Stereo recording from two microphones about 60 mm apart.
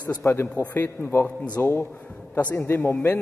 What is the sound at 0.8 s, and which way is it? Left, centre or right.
Speech, left.